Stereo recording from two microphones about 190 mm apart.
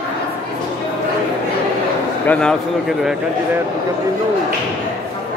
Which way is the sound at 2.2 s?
5° left (ahead or behind).